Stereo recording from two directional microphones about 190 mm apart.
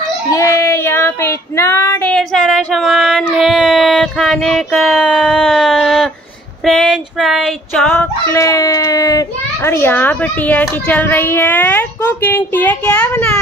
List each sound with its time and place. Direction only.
0.3 s child singing: 15° left (ahead or behind)
2.1 s child singing: centre (ahead or behind)
6.6 s a sound: centre (ahead or behind)